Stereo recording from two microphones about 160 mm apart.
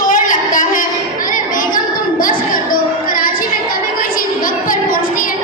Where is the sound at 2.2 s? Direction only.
60° left (ahead or behind).